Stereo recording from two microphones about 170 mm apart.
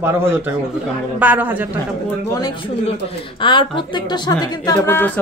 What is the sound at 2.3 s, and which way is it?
Speech, 25° left (ahead or behind).